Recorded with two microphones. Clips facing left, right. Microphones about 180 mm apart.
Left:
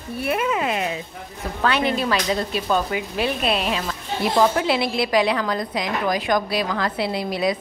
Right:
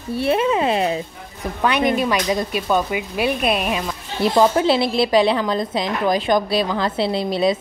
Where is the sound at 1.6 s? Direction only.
15° right (ahead or behind).